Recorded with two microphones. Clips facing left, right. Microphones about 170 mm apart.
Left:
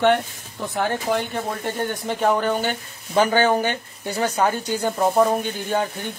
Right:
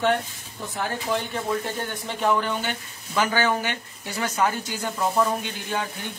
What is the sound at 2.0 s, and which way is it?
Speech, 45° left (ahead or behind).